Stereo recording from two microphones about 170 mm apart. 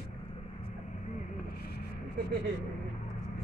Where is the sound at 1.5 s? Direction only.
65° left (ahead or behind).